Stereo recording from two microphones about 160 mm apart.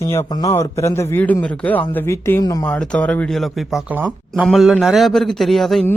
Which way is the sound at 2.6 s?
5° left (ahead or behind).